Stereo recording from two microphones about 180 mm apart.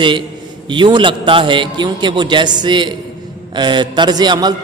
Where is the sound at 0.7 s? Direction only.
25° right (ahead or behind).